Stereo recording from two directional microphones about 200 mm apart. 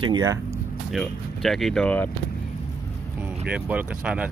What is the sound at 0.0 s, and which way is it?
Speech, 20° right (ahead or behind).